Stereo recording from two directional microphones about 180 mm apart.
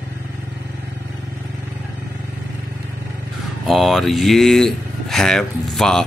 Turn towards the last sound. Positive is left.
turn(degrees=5)  # may be behind; listen again after turning